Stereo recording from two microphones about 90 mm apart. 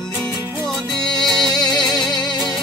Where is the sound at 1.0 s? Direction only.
5° left (ahead or behind).